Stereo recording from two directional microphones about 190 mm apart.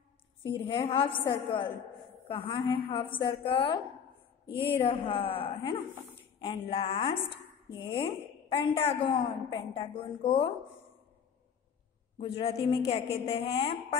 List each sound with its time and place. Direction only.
0.6 s a woman's voice: 30° left (ahead or behind)
12.2 s a woman's voice: 30° left (ahead or behind)